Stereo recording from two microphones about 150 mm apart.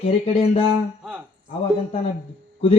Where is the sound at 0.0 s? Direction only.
40° left (ahead or behind).